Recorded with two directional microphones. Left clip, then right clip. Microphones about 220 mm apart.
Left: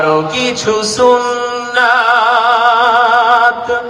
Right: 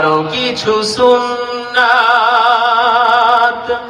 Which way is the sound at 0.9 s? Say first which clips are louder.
Left 2 dB; 30° left (ahead or behind).